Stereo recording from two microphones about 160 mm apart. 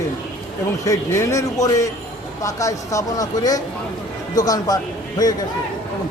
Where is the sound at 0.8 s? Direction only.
20° left (ahead or behind).